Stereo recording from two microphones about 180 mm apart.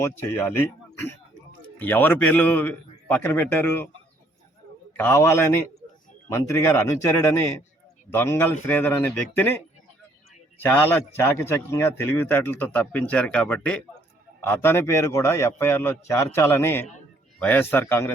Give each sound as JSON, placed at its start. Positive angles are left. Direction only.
{"t": 0.2, "sound": "a man's voice", "side_deg": 15}
{"t": 4.9, "sound": "a man's voice", "side_deg": 15}
{"t": 10.6, "sound": "a man's voice", "side_deg": 10}